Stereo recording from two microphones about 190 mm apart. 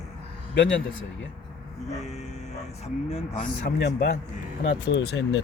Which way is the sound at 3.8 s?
60° left (ahead or behind).